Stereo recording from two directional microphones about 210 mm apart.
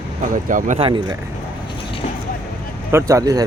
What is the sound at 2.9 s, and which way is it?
Speech, 15° right (ahead or behind).